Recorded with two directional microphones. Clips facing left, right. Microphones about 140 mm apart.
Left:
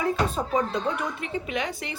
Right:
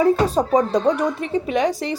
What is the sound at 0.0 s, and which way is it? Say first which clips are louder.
A woman's voice: right 9 dB; 40° right (ahead or behind).